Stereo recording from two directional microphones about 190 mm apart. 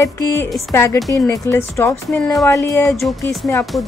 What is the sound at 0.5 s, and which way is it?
Speech, centre (ahead or behind).